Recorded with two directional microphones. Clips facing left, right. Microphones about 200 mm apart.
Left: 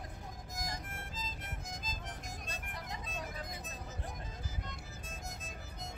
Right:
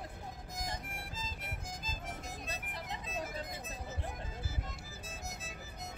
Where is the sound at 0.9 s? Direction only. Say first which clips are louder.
Even; 10° right (ahead or behind).